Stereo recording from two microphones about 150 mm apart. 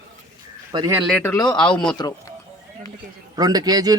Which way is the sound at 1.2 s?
20° left (ahead or behind).